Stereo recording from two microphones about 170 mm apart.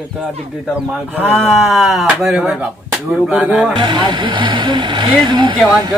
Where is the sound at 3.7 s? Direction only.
25° right (ahead or behind).